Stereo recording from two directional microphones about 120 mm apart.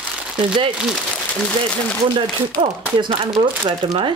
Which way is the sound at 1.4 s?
10° left (ahead or behind).